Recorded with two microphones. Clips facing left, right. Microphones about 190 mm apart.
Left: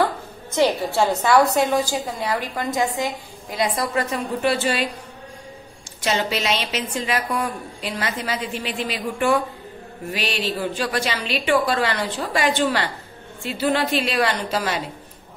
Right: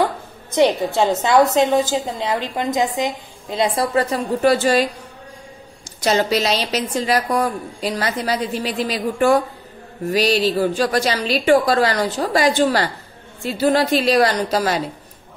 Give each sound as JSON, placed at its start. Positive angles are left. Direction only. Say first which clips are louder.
{"t": 0.0, "sound": "a sound", "louder": "right 1 dB", "side_deg": -20}
{"t": 1.2, "sound": "a woman's voice", "louder": "right 3 dB", "side_deg": -20}
{"t": 5.9, "sound": "a woman's voice", "louder": "right 5 dB", "side_deg": -40}